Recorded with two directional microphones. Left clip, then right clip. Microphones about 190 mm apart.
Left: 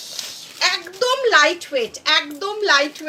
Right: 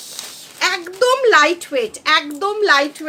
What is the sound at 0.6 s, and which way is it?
A woman's voice, 55° right (ahead or behind).